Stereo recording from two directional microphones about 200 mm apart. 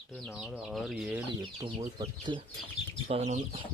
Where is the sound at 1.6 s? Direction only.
25° right (ahead or behind).